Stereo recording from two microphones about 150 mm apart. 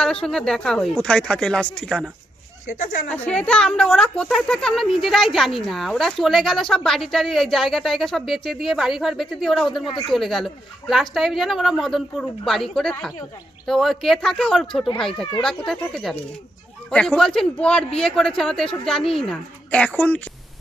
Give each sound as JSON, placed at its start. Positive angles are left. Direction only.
{"t": 0.0, "sound": "speech", "side_deg": 5}
{"t": 2.6, "sound": "speech", "side_deg": 65}
{"t": 3.3, "sound": "speech", "side_deg": 5}